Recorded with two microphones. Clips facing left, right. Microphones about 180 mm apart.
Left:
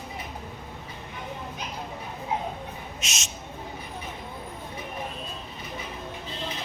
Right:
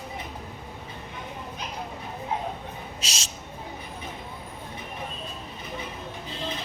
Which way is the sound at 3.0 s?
30° right (ahead or behind).